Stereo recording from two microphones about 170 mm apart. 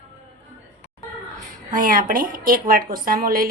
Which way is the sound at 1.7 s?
55° right (ahead or behind).